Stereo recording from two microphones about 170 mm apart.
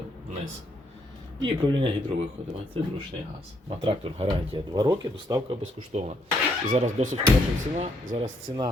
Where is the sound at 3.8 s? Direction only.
30° right (ahead or behind).